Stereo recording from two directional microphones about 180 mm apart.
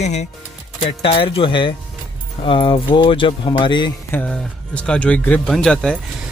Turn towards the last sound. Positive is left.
turn(degrees=5)  # may be behind; listen again after turning